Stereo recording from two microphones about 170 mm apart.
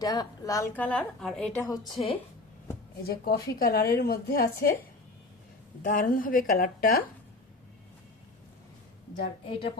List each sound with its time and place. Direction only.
0.0 s a woman's voice: 20° left (ahead or behind); by 1.6 s 5° left (ahead or behind)
1.9 s a woman's voice: 30° left (ahead or behind)
3.1 s a woman's voice: 60° left (ahead or behind)
5.8 s a woman's voice: 55° left (ahead or behind)
9.5 s a woman's voice: 35° left (ahead or behind)